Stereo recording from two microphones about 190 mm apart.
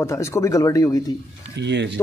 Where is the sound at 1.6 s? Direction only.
65° right (ahead or behind).